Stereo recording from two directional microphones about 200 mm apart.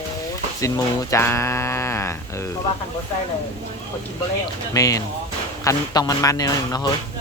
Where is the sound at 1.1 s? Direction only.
15° left (ahead or behind).